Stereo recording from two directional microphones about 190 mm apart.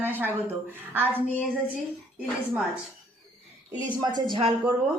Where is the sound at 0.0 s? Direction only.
10° right (ahead or behind).